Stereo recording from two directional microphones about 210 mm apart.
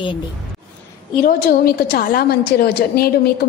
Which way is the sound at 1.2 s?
45° left (ahead or behind).